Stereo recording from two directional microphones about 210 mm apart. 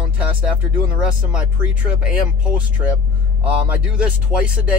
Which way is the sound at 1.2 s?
5° right (ahead or behind).